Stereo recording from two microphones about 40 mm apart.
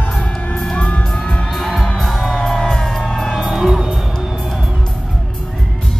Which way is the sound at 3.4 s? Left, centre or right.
Centre.